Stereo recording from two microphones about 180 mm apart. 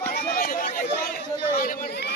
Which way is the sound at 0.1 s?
50° left (ahead or behind).